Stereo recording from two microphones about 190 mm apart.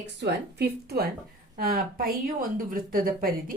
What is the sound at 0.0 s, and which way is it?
A woman's voice, 65° right (ahead or behind).